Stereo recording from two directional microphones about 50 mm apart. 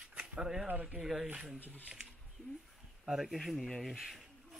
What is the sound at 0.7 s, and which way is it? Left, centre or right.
Speech, right.